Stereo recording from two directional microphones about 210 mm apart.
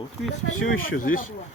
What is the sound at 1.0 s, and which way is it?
Speech, 40° left (ahead or behind).